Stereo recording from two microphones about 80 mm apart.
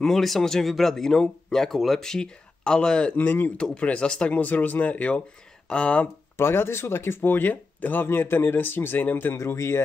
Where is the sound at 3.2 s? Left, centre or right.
Left.